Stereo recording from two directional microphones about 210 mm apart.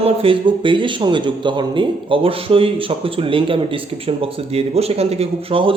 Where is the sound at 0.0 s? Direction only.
25° right (ahead or behind).